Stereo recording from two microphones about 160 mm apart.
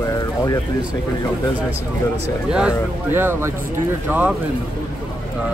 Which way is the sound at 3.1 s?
15° right (ahead or behind).